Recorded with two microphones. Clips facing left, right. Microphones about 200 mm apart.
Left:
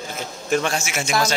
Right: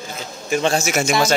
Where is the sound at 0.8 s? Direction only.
40° right (ahead or behind).